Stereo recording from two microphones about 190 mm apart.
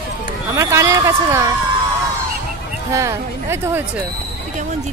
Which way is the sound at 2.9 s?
15° right (ahead or behind).